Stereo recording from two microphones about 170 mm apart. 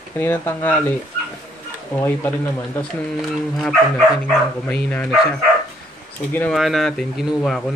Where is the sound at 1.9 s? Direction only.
15° left (ahead or behind).